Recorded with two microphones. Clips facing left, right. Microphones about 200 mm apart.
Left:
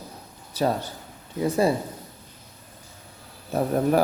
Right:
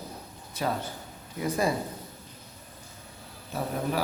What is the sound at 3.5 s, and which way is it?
Speech, 50° left (ahead or behind).